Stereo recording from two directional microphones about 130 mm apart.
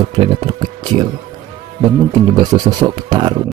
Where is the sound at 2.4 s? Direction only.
35° right (ahead or behind).